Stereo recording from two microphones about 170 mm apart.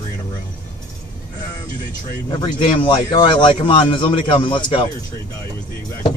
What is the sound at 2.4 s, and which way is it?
A man's voice, 30° left (ahead or behind).